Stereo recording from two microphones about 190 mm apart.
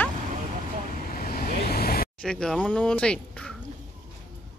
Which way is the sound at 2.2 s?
5° left (ahead or behind).